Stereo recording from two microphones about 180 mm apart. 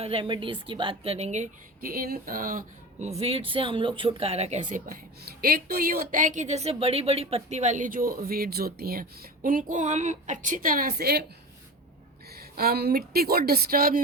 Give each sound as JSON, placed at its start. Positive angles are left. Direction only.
{"t": 0.0, "sound": "speech", "side_deg": -30}
{"t": 3.2, "sound": "speech", "side_deg": -35}
{"t": 5.4, "sound": "speech", "side_deg": -55}
{"t": 12.3, "sound": "a woman's voice", "side_deg": -60}